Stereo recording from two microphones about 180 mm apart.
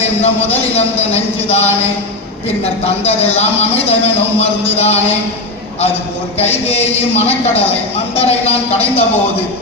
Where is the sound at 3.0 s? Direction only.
35° left (ahead or behind).